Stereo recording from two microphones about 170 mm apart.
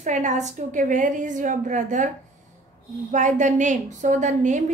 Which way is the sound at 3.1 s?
45° right (ahead or behind).